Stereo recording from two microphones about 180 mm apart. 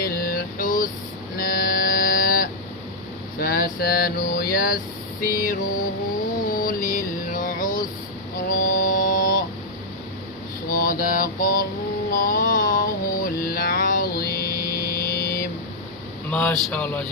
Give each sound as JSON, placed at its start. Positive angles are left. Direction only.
{"t": 0.0, "sound": "a sound", "side_deg": 55}
{"t": 3.3, "sound": "vehicle", "side_deg": 50}
{"t": 5.2, "sound": "mantra", "side_deg": 55}
{"t": 6.5, "sound": "a sound", "side_deg": 55}
{"t": 8.4, "sound": "music", "side_deg": 50}
{"t": 10.7, "sound": "mantra", "side_deg": 50}
{"t": 16.3, "sound": "speech", "side_deg": 5}